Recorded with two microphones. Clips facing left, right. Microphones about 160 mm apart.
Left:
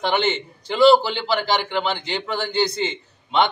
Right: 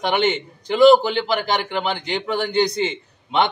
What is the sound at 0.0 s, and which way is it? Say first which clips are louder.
A man's voice: right 2 dB; 15° right (ahead or behind).